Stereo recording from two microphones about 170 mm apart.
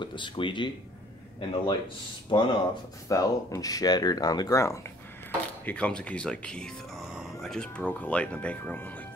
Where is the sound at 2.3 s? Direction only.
30° left (ahead or behind).